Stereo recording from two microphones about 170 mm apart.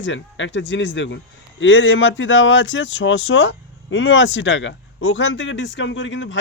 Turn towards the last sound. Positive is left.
turn(degrees=90)